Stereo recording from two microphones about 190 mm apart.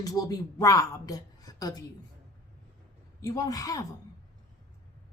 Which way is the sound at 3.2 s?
20° left (ahead or behind).